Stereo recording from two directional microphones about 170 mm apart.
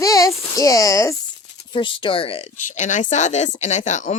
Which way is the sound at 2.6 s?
45° left (ahead or behind).